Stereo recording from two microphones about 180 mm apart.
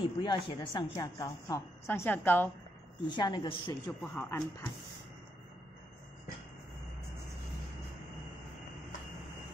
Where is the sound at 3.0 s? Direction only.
25° left (ahead or behind).